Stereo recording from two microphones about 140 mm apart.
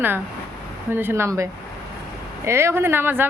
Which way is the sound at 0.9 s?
15° right (ahead or behind).